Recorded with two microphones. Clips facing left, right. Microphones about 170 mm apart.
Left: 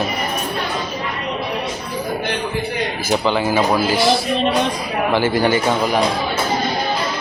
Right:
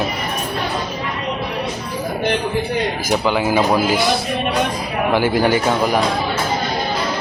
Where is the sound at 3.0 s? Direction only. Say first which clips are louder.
Left 2 dB; 10° right (ahead or behind).